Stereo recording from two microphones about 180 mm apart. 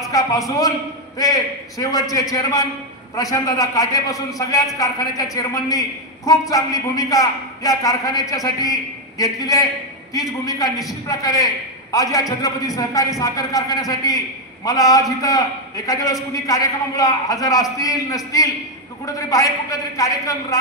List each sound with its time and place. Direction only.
0.1 s a woman's voice: 20° left (ahead or behind)